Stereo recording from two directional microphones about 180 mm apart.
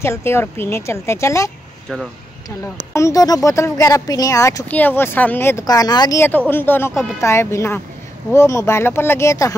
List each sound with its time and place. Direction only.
0.0 s speech: 15° left (ahead or behind)
2.9 s speech: 15° left (ahead or behind)